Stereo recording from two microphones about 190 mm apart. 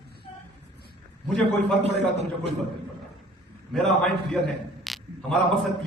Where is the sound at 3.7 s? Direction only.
Centre (ahead or behind).